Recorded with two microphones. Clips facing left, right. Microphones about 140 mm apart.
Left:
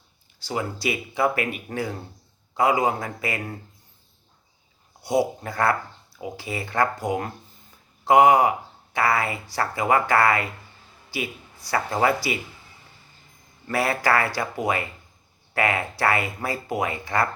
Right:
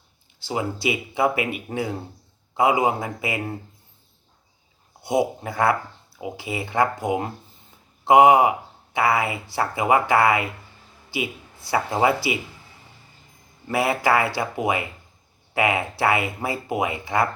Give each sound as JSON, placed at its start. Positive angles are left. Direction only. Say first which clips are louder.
{"t": 0.4, "sound": "speech", "louder": "right 2 dB", "side_deg": -20}
{"t": 5.0, "sound": "speech", "louder": "right 1 dB", "side_deg": -20}
{"t": 13.7, "sound": "speech", "louder": "right 2 dB", "side_deg": -20}